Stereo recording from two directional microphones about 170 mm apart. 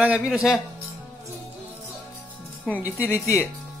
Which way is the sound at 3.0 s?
15° left (ahead or behind).